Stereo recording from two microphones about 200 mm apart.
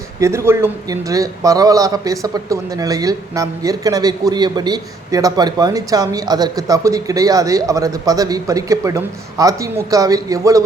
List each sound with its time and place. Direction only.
0.2 s a man's voice: 15° right (ahead or behind)